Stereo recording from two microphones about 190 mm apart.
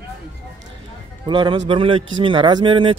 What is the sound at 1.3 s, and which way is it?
Speech, 25° right (ahead or behind).